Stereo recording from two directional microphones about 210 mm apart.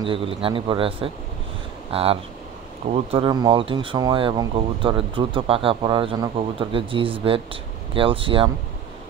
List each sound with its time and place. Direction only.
0.0 s speech: 25° right (ahead or behind)